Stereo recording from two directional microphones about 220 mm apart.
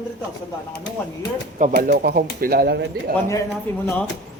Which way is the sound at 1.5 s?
35° right (ahead or behind).